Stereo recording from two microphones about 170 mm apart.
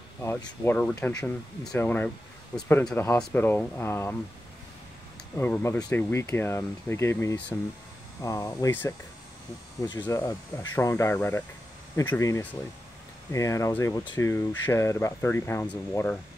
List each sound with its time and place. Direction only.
0.2 s speech: 15° left (ahead or behind)
5.3 s speech: 10° left (ahead or behind)
9.8 s speech: 25° left (ahead or behind)
10.0 s speech: 15° left (ahead or behind)